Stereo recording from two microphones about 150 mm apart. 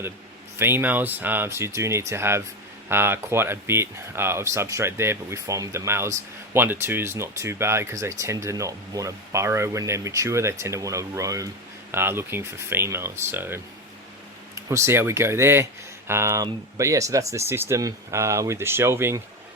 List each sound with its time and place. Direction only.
0.6 s speech: 15° right (ahead or behind)
14.7 s speech: 15° right (ahead or behind)